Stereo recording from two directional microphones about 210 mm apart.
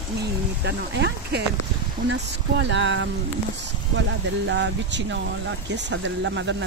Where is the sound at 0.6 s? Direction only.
55° right (ahead or behind).